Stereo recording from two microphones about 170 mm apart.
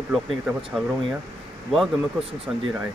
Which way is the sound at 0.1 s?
5° right (ahead or behind).